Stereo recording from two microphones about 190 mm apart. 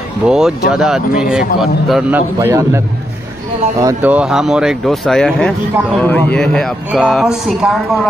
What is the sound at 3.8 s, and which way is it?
Speech, 10° right (ahead or behind).